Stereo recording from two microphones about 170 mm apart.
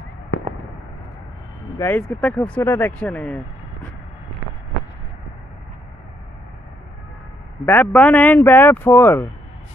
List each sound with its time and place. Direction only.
0.3 s fireworks: 90° left
1.8 s speech: 10° left (ahead or behind)
7.6 s speech: 10° left (ahead or behind)